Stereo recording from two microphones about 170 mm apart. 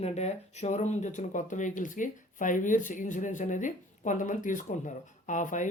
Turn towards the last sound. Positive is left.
turn(degrees=45)  # may be behind; listen again after turning